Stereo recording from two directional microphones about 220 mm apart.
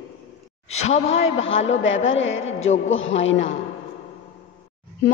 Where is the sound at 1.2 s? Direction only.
60° left (ahead or behind).